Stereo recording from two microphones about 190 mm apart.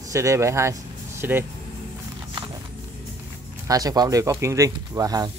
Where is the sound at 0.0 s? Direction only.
15° right (ahead or behind).